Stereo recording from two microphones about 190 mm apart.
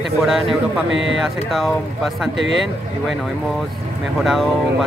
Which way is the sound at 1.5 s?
Centre (ahead or behind).